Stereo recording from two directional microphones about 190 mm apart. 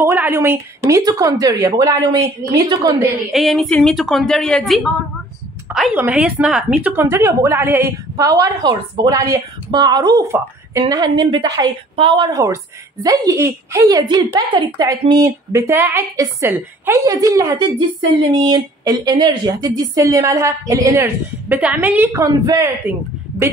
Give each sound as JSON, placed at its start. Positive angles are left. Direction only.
{"t": 0.0, "sound": "a woman's voice", "side_deg": -10}
{"t": 3.3, "sound": "a woman's voice", "side_deg": 0}